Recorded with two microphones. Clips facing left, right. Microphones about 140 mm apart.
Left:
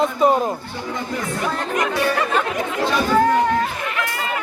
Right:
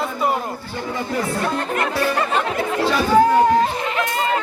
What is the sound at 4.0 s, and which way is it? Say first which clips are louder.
Chatter: right 5 dB; 30° right (ahead or behind).